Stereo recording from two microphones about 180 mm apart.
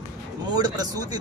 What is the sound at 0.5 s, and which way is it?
Speech, 20° right (ahead or behind).